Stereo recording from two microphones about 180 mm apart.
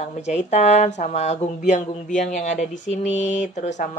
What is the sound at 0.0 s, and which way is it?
Speech, 40° left (ahead or behind).